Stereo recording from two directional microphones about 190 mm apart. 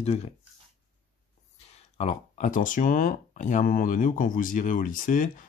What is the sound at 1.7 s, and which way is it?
Speech, 35° left (ahead or behind).